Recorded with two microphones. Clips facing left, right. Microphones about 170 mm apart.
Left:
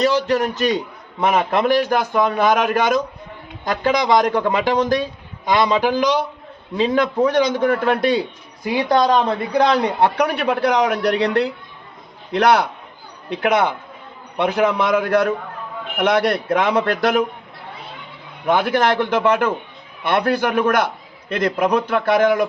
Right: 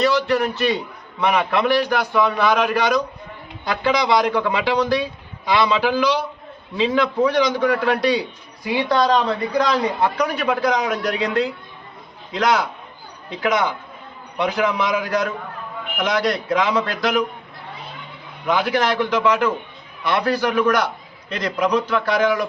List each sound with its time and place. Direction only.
0.0 s a man's voice: 40° left (ahead or behind)
18.4 s a man's voice: 50° left (ahead or behind)